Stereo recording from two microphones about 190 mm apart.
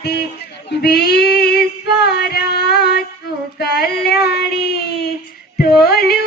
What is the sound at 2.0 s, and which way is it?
Carnatic music, 60° left (ahead or behind).